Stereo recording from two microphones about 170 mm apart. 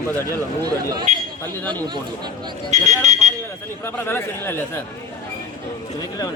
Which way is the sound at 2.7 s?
45° right (ahead or behind).